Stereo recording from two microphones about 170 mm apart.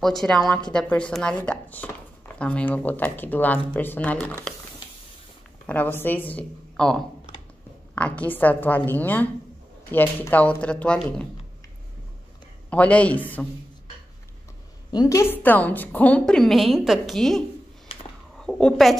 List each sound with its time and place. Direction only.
0.0 s a woman's voice: centre (ahead or behind)
5.7 s a woman's voice: 10° left (ahead or behind)
12.6 s a woman's voice: 10° left (ahead or behind)
14.9 s a woman's voice: 20° left (ahead or behind); by 17.4 s centre (ahead or behind)
17.9 s a sound: 35° left (ahead or behind)
18.4 s a woman's voice: 5° left (ahead or behind)